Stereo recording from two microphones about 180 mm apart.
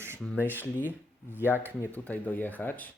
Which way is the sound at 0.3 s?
10° right (ahead or behind).